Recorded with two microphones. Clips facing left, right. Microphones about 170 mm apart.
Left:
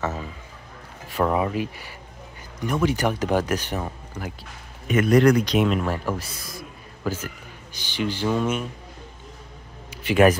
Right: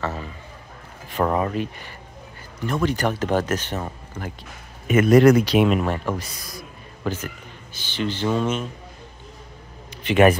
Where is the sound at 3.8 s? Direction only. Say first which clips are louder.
Even; centre (ahead or behind).